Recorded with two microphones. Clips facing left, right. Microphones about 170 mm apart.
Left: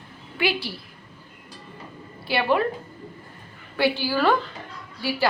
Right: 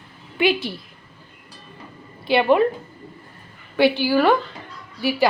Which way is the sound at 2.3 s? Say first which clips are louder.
Right 6 dB; 20° right (ahead or behind).